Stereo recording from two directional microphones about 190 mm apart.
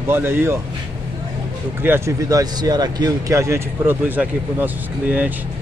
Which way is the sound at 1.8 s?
15° right (ahead or behind).